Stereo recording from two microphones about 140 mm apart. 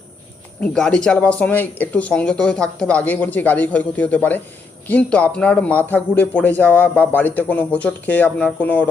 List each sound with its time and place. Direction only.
0.6 s a man's voice: 5° left (ahead or behind)